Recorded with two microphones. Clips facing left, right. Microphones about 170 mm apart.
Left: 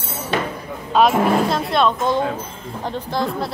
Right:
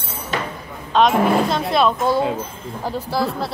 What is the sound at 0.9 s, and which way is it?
A woman's voice, 5° left (ahead or behind).